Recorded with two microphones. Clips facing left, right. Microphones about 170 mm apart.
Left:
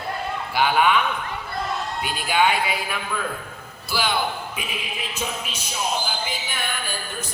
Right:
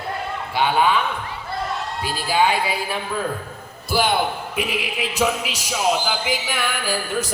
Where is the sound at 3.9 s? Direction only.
50° right (ahead or behind).